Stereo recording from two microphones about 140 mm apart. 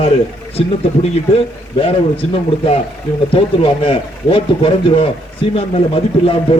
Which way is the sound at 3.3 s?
40° left (ahead or behind).